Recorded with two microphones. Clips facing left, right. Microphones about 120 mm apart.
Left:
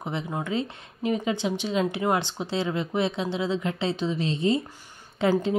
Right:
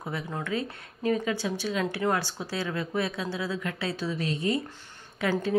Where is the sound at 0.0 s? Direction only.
20° left (ahead or behind).